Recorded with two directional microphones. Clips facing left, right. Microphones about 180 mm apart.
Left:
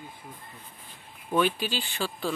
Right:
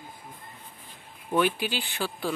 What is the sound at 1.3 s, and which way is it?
Speech, 10° right (ahead or behind).